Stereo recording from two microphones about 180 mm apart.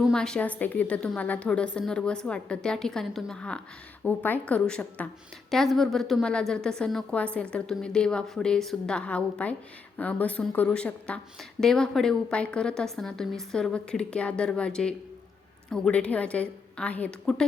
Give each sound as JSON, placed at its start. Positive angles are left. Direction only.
{"t": 0.0, "sound": "a woman's voice", "side_deg": 5}